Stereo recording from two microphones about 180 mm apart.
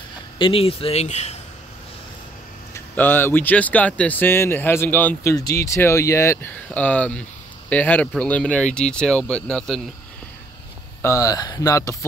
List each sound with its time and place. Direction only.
0.4 s speech: 30° left (ahead or behind)
2.7 s speech: 10° left (ahead or behind)
11.0 s speech: 15° left (ahead or behind)